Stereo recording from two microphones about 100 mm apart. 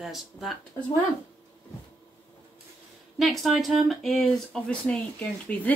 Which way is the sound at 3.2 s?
Centre (ahead or behind).